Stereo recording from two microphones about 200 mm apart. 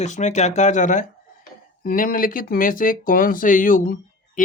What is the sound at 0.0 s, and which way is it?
Speech, 35° left (ahead or behind).